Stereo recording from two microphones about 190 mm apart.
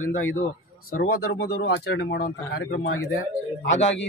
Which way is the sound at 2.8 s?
90° left.